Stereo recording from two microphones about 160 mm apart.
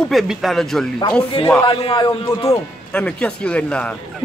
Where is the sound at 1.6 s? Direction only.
25° left (ahead or behind).